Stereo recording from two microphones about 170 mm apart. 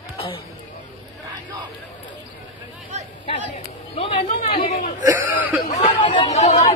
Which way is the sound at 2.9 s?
40° right (ahead or behind).